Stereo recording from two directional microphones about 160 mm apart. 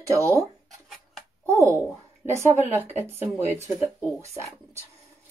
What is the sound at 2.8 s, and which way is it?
A woman's voice, 15° right (ahead or behind).